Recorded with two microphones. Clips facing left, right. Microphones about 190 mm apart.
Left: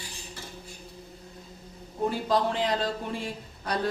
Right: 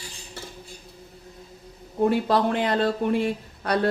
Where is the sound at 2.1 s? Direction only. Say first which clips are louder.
Right 4 dB; 65° right (ahead or behind).